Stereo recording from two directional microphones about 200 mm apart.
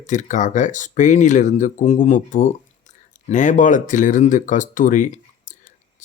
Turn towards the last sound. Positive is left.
turn(degrees=40)  # may be behind; listen again after turning